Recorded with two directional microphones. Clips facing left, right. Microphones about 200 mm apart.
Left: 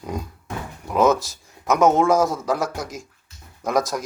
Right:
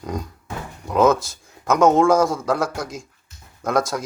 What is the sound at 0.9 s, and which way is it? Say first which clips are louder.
Speech: right 1 dB; centre (ahead or behind).